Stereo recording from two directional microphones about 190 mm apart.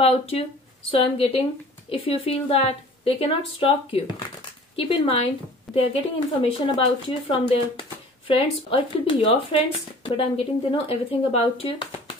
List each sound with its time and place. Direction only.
0.0 s speech: 30° left (ahead or behind)